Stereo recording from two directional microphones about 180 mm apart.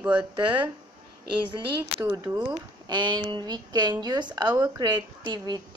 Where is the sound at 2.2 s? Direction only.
25° right (ahead or behind).